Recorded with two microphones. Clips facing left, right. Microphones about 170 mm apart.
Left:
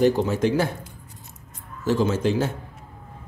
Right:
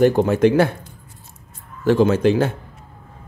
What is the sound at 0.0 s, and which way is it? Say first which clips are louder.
Speech: right 5 dB; 55° right (ahead or behind).